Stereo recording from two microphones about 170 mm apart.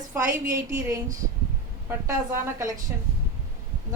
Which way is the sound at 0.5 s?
20° right (ahead or behind).